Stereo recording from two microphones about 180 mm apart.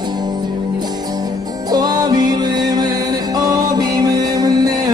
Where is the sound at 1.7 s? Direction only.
20° right (ahead or behind).